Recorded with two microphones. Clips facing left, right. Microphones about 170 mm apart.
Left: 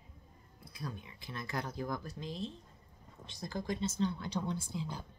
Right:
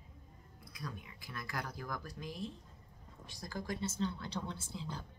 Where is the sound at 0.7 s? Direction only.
25° left (ahead or behind).